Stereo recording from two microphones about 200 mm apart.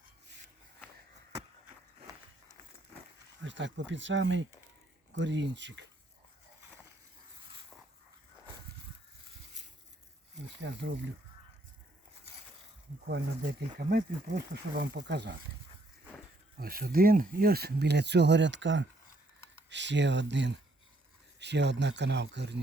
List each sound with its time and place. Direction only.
3.4 s speech: 65° right (ahead or behind)
10.6 s speech: 60° right (ahead or behind)
13.7 s speech: 50° right (ahead or behind)
16.6 s speech: 50° right (ahead or behind)